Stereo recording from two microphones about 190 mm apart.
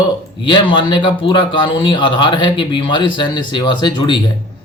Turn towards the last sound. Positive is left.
turn(degrees=25)  # may be behind; listen again after turning